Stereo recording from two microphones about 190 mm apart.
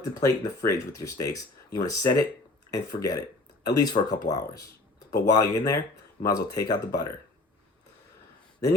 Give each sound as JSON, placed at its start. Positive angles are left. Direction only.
{"t": 0.0, "sound": "speech", "side_deg": 15}
{"t": 5.1, "sound": "speech", "side_deg": 60}
{"t": 6.2, "sound": "speech", "side_deg": 20}